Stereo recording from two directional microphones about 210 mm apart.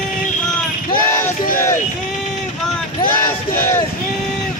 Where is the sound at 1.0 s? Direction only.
10° left (ahead or behind).